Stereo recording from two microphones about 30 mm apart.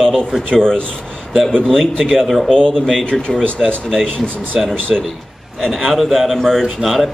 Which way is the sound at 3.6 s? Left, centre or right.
Centre.